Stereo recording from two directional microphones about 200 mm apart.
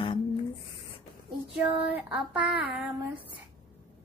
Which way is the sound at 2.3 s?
5° right (ahead or behind).